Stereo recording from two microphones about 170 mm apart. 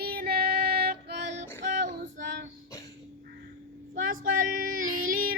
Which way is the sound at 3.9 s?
55° right (ahead or behind).